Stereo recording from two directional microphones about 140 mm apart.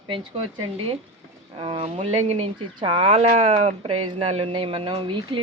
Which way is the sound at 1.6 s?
40° right (ahead or behind).